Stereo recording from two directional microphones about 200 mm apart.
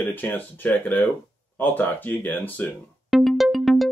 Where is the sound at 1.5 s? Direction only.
10° left (ahead or behind).